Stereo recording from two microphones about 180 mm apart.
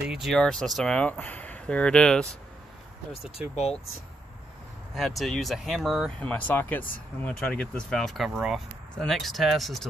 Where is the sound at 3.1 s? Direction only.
35° left (ahead or behind).